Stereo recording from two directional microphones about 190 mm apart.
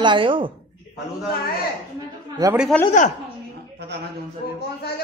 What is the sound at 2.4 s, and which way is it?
Speech, 20° right (ahead or behind).